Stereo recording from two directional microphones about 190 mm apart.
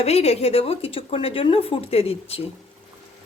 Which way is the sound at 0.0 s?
35° left (ahead or behind).